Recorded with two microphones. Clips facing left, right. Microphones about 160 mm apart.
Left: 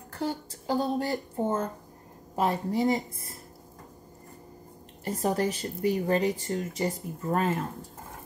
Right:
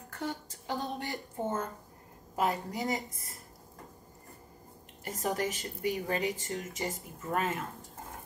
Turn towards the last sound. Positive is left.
turn(degrees=35)  # may be behind; listen again after turning